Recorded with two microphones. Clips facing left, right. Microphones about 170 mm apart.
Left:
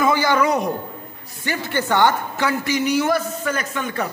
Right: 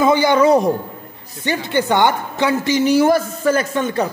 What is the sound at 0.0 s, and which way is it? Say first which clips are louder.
A woman's voice: right 5 dB; 20° right (ahead or behind).